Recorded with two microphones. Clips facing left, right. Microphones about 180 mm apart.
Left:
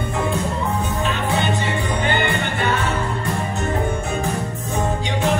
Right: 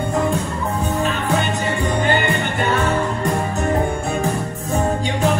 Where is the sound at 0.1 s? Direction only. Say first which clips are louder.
Right 1 dB; 35° right (ahead or behind).